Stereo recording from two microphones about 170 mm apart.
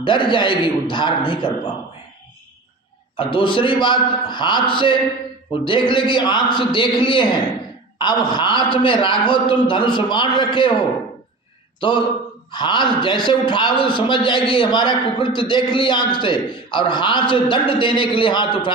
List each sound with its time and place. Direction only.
0.0 s a man's voice: 30° left (ahead or behind)
3.2 s a man's voice: 30° left (ahead or behind)